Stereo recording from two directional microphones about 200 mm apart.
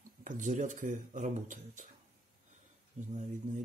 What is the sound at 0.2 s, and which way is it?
Speech, 40° right (ahead or behind).